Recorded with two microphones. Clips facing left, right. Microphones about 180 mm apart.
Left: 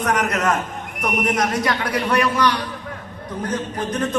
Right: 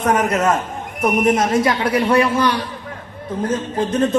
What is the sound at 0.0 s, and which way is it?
A man's voice, 25° right (ahead or behind).